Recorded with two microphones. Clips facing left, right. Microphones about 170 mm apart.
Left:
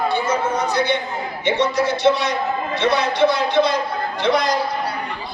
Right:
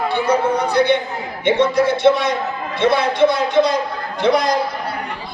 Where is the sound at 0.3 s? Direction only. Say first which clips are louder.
Right 3 dB; 60° right (ahead or behind).